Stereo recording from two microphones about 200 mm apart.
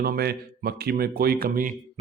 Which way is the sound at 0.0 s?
50° right (ahead or behind).